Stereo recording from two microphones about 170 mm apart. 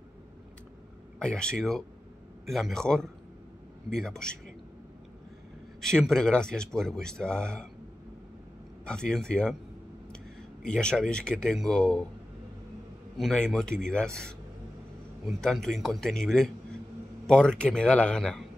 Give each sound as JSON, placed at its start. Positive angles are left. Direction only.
{"t": 1.2, "sound": "speech", "side_deg": 5}
{"t": 5.8, "sound": "speech", "side_deg": 0}
{"t": 8.8, "sound": "speech", "side_deg": 5}
{"t": 10.6, "sound": "speech", "side_deg": 5}
{"t": 13.2, "sound": "speech", "side_deg": 0}